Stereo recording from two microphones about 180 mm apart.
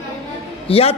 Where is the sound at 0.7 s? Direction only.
35° left (ahead or behind).